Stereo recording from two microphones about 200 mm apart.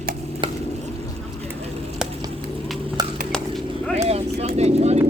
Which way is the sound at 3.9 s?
30° right (ahead or behind).